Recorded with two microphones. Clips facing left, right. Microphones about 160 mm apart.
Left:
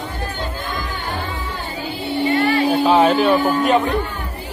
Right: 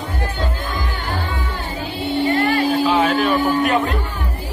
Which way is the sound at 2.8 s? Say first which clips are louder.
Left 3 dB; 30° left (ahead or behind).